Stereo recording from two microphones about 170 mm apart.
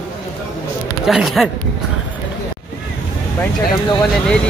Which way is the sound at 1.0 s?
Centre (ahead or behind).